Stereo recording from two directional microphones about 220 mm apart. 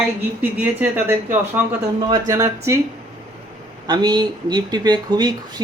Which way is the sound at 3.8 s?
20° right (ahead or behind).